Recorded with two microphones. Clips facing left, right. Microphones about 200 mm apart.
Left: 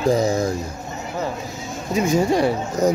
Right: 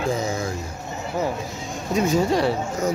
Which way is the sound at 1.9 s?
15° left (ahead or behind).